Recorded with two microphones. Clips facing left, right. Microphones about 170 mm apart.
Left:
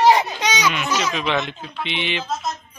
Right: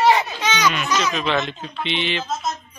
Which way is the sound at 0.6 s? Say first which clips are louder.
Right 3 dB; 10° left (ahead or behind).